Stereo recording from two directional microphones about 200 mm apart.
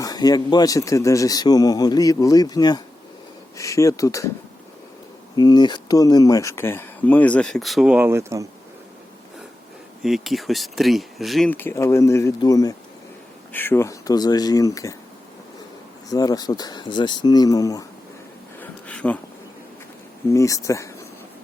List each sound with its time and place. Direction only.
0.0 s speech: 20° left (ahead or behind)
5.4 s speech: 20° left (ahead or behind); by 8.4 s 15° right (ahead or behind)
10.0 s speech: centre (ahead or behind); by 14.9 s 15° left (ahead or behind)
16.0 s speech: 20° left (ahead or behind)
18.6 s a sound: 5° left (ahead or behind)
20.3 s speech: 15° left (ahead or behind)